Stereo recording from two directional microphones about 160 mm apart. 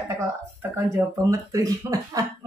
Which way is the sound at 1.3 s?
20° right (ahead or behind).